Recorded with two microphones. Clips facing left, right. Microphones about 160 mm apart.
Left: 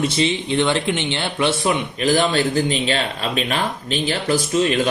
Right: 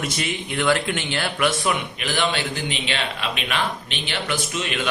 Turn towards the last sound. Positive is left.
turn(degrees=35)  # may be behind; listen again after turning